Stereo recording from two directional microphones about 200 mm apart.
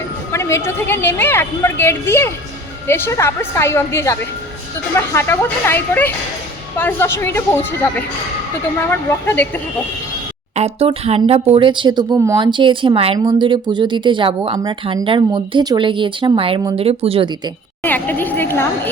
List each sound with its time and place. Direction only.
0.3 s a woman's voice: 15° left (ahead or behind)
10.5 s speech: 30° right (ahead or behind)
17.8 s a woman's voice: 10° left (ahead or behind)